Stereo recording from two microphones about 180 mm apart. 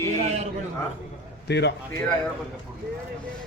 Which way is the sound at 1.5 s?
70° left (ahead or behind).